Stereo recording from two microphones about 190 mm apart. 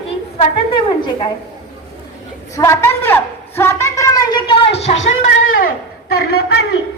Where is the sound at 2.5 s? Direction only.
15° left (ahead or behind); by 4.9 s 30° left (ahead or behind).